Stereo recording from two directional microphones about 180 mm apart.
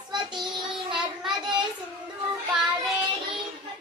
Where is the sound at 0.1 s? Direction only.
25° right (ahead or behind).